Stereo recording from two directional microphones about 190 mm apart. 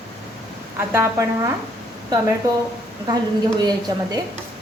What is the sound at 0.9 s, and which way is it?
Speech, 15° right (ahead or behind).